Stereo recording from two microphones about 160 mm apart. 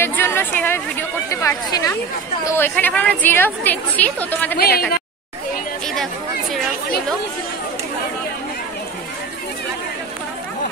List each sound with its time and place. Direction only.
0.0 s a sound: 15° left (ahead or behind)
1.3 s a woman's voice: 20° left (ahead or behind)
4.6 s speech: 75° left (ahead or behind)